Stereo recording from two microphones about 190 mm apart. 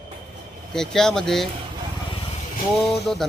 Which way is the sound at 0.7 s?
5° left (ahead or behind).